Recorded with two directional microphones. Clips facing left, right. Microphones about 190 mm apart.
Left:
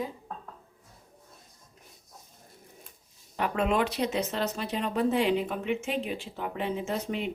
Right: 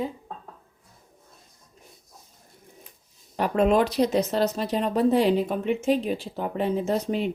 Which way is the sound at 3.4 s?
40° right (ahead or behind).